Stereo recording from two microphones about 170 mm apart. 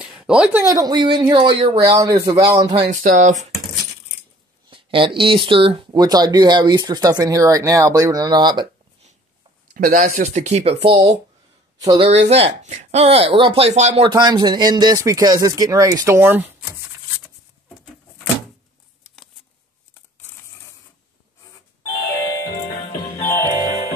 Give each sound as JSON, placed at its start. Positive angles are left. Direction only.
{"t": 0.0, "sound": "speech", "side_deg": -5}
{"t": 1.6, "sound": "speech", "side_deg": -35}
{"t": 1.9, "sound": "speech", "side_deg": -20}
{"t": 2.9, "sound": "speech", "side_deg": -45}
{"t": 4.6, "sound": "speech", "side_deg": -30}
{"t": 9.8, "sound": "speech", "side_deg": -55}
{"t": 14.0, "sound": "speech", "side_deg": -25}
{"t": 19.9, "sound": "a sound", "side_deg": 10}
{"t": 22.9, "sound": "music", "side_deg": 30}
{"t": 23.3, "sound": "music", "side_deg": 20}